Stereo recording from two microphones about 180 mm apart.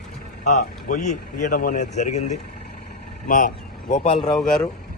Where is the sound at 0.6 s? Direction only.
40° left (ahead or behind).